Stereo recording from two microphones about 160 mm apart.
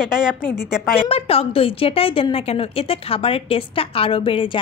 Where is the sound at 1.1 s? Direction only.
35° left (ahead or behind).